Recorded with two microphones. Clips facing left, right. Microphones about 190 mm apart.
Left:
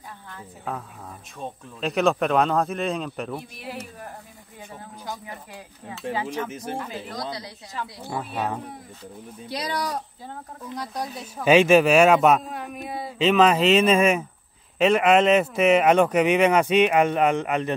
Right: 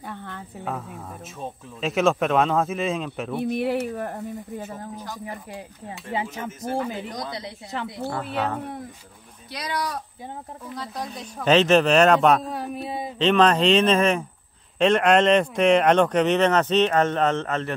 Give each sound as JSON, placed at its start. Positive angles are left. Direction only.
{"t": 0.7, "sound": "speech", "side_deg": 0}
{"t": 3.3, "sound": "speech", "side_deg": -65}
{"t": 5.2, "sound": "speech", "side_deg": -30}
{"t": 7.7, "sound": "speech", "side_deg": -65}
{"t": 8.1, "sound": "speech", "side_deg": 10}
{"t": 9.5, "sound": "speech", "side_deg": 30}
{"t": 11.1, "sound": "speech", "side_deg": 5}
{"t": 12.4, "sound": "speech", "side_deg": -35}
{"t": 13.2, "sound": "speech", "side_deg": 5}